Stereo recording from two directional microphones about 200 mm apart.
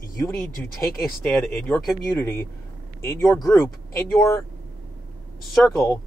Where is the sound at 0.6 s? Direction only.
5° left (ahead or behind).